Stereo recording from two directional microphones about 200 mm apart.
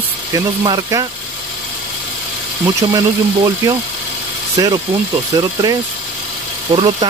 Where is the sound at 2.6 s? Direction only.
20° right (ahead or behind).